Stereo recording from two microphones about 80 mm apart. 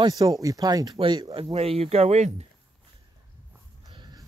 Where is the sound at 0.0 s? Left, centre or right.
Right.